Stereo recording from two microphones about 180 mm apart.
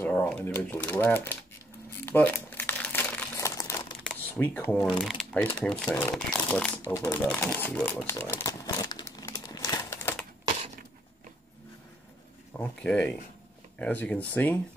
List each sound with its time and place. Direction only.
0.0 s speech: 10° left (ahead or behind)
2.0 s crumpling: 10° left (ahead or behind)
4.4 s speech: 10° left (ahead or behind)
7.2 s typewriter: 10° left (ahead or behind)
12.5 s speech: 10° left (ahead or behind)